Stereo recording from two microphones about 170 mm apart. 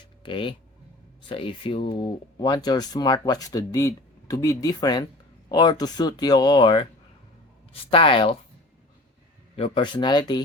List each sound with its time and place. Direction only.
0.2 s speech: 30° left (ahead or behind)
9.6 s speech: 35° left (ahead or behind)